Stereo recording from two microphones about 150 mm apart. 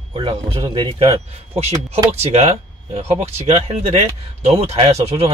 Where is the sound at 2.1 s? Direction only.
45° right (ahead or behind).